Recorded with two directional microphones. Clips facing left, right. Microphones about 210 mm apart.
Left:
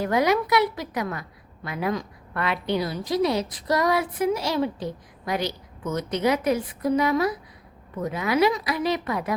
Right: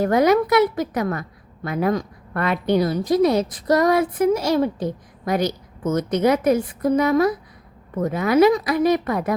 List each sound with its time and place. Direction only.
0.0 s a woman's voice: 45° right (ahead or behind)